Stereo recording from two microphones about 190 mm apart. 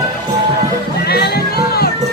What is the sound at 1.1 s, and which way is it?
Music, 55° left (ahead or behind).